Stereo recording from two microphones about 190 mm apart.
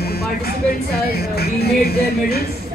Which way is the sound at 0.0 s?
55° left (ahead or behind).